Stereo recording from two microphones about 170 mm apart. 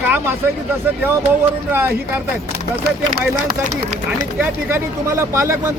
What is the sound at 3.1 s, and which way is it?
Speech, 45° right (ahead or behind).